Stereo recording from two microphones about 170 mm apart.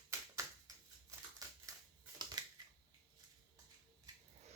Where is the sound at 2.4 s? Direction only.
25° right (ahead or behind).